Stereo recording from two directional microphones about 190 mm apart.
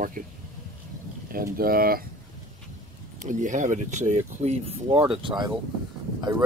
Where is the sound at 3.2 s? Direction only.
40° right (ahead or behind).